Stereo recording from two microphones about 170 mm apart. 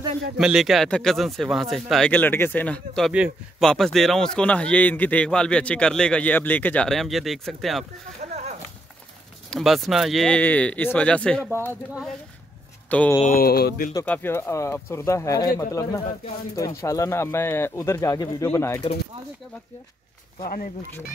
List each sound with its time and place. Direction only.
0.4 s a man's voice: 5° right (ahead or behind)
3.1 s a man's voice: 5° right (ahead or behind)
9.5 s a man's voice: centre (ahead or behind)
13.2 s speech: 60° left (ahead or behind)
14.0 s speech: 10° left (ahead or behind)